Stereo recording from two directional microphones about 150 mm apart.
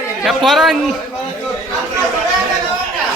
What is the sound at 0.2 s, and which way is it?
Speech, centre (ahead or behind).